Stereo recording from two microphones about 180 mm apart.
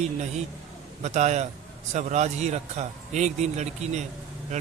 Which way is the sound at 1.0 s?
40° right (ahead or behind).